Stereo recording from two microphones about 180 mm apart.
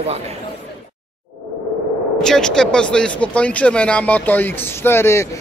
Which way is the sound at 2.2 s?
5° left (ahead or behind).